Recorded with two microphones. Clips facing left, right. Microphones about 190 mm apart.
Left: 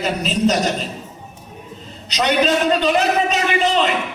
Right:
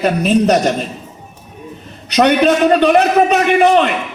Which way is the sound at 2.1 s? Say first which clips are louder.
Right 6 dB; 60° right (ahead or behind).